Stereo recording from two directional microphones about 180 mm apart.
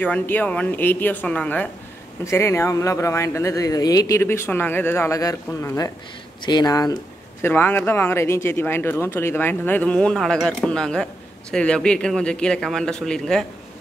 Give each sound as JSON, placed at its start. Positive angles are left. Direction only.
{"t": 0.0, "sound": "speech", "side_deg": 10}